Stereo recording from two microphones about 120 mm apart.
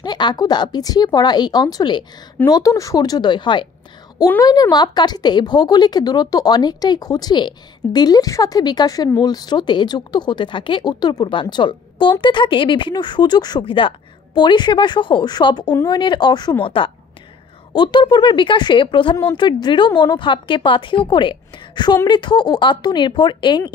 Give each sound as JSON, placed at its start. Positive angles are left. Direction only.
{"t": 0.0, "sound": "a woman's voice", "side_deg": 35}